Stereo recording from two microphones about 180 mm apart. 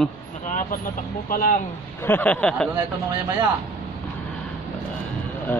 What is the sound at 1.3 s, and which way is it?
Speech, 50° left (ahead or behind).